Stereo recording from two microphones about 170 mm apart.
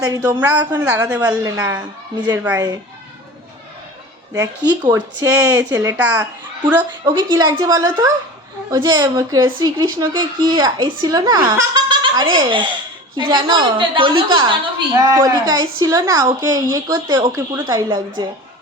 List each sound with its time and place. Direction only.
0.0 s a child's voice: 20° right (ahead or behind)
4.4 s a child's voice: 20° right (ahead or behind)
7.1 s speech: 25° right (ahead or behind)